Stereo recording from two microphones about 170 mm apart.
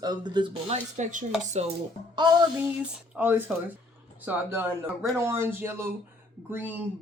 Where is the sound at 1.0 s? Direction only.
50° right (ahead or behind).